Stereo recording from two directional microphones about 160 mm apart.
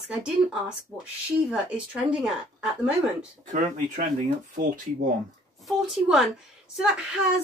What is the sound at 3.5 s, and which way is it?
Speech, 50° right (ahead or behind).